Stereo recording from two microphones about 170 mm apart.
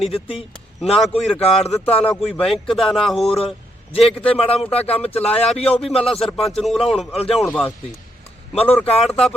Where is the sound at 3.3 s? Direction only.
35° left (ahead or behind).